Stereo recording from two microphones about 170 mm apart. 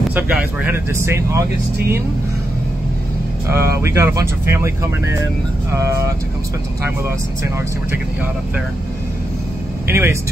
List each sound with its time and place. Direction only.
0.1 s speech: 10° right (ahead or behind)
3.4 s speech: 15° right (ahead or behind)
9.8 s speech: 15° right (ahead or behind)